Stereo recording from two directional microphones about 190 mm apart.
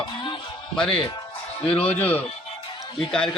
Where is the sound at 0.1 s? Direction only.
25° left (ahead or behind).